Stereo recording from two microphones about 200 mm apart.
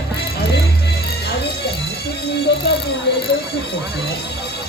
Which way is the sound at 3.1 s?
55° left (ahead or behind).